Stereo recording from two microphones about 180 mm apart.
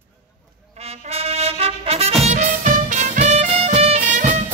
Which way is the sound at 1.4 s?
35° right (ahead or behind).